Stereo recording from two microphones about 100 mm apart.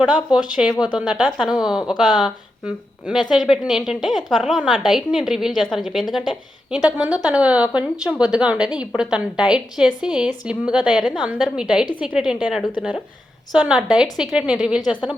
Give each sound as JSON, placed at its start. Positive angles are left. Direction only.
{"t": 0.0, "sound": "a woman's voice", "side_deg": -10}
{"t": 1.8, "sound": "speech", "side_deg": 50}
{"t": 2.1, "sound": "a woman's voice", "side_deg": -5}